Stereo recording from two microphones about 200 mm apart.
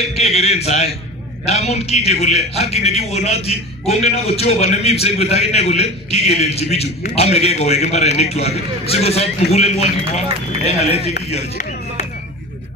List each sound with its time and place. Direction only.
0.1 s a man's voice: 35° left (ahead or behind)